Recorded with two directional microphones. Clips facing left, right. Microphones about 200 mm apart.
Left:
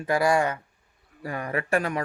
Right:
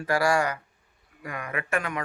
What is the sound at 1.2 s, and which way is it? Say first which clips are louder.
Speech: left 4 dB; 35° left (ahead or behind).